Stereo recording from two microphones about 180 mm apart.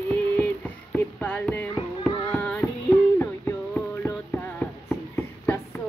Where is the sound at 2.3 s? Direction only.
10° left (ahead or behind).